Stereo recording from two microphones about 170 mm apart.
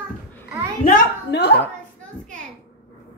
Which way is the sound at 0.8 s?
50° left (ahead or behind).